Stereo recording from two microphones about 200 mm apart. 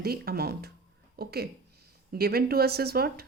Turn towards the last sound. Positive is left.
turn(degrees=-50)  # may be behind; listen again after turning